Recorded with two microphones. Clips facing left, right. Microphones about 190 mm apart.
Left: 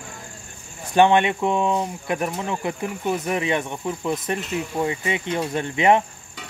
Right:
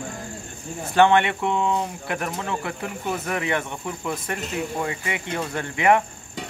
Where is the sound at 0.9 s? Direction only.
15° left (ahead or behind).